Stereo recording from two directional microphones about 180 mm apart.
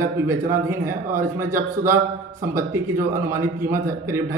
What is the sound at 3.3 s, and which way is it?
Speech, 15° right (ahead or behind).